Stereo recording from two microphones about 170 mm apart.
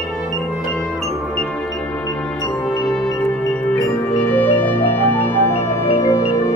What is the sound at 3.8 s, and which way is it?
Music, 10° left (ahead or behind).